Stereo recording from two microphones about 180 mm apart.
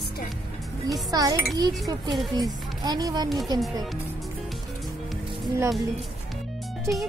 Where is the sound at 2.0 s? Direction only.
Centre (ahead or behind).